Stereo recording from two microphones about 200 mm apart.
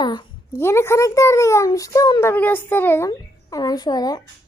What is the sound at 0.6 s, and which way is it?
A child's voice, 15° left (ahead or behind).